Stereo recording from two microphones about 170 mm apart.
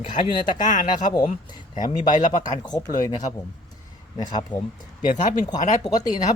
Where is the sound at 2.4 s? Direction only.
20° left (ahead or behind).